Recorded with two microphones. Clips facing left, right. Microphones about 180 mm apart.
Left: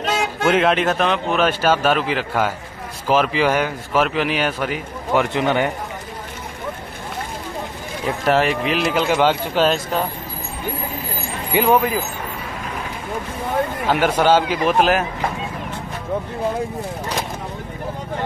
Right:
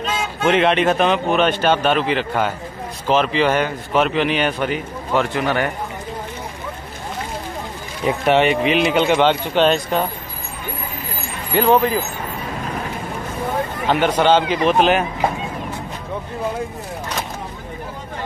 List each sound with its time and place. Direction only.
0.0 s a sound: 75° left (ahead or behind)
0.5 s a man's voice: centre (ahead or behind)
5.1 s speech: 15° left (ahead or behind)
8.3 s a man's voice: centre (ahead or behind)
11.5 s speech: 10° left (ahead or behind)
13.8 s a man's voice: 5° left (ahead or behind)